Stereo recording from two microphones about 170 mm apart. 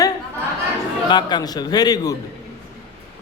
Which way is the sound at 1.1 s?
25° left (ahead or behind).